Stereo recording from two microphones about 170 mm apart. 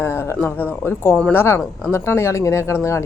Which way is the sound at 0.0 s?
15° left (ahead or behind).